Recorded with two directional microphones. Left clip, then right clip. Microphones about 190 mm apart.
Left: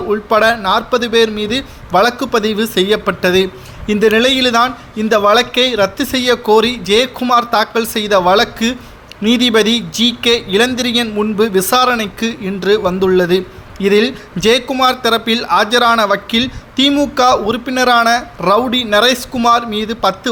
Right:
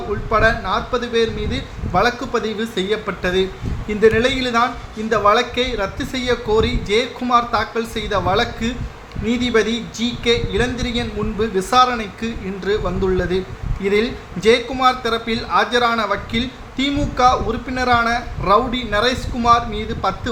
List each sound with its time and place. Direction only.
0.1 s a man's voice: 45° left (ahead or behind)